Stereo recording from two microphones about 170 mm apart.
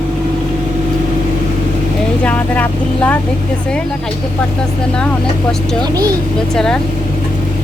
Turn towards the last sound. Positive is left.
turn(degrees=5)  # may be behind; listen again after turning